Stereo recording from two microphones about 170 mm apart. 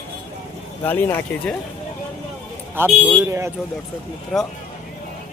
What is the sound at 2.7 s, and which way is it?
Speech, 15° right (ahead or behind).